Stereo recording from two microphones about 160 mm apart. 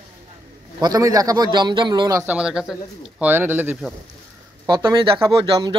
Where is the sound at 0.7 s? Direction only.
25° right (ahead or behind).